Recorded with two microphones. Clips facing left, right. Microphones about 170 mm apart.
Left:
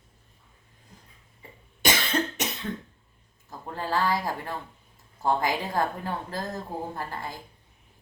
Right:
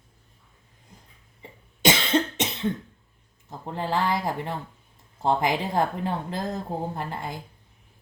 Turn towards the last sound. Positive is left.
turn(degrees=-20)  # may be behind; listen again after turning